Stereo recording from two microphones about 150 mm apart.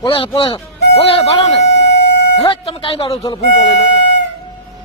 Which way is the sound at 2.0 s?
90° left.